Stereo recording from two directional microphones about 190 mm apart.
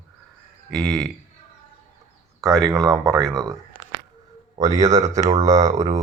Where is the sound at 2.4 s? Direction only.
Centre (ahead or behind).